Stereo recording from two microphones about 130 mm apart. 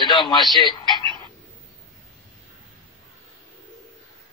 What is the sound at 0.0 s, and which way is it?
Speech, 35° left (ahead or behind).